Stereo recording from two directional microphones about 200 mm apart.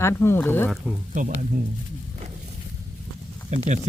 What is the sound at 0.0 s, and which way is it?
Speech, 10° left (ahead or behind).